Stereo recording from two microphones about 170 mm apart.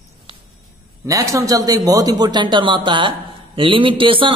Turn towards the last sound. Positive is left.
turn(degrees=-30)  # may be behind; listen again after turning